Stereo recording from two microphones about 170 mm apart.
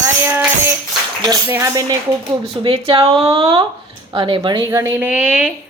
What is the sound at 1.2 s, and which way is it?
Speech, 20° right (ahead or behind).